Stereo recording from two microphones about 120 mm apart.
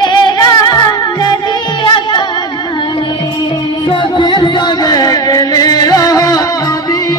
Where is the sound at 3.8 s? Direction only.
40° left (ahead or behind).